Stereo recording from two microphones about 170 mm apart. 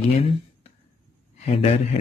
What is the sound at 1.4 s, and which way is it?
Speech, 40° left (ahead or behind).